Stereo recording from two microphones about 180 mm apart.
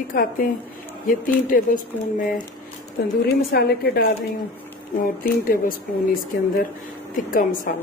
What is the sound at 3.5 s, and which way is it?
Speech, 60° left (ahead or behind).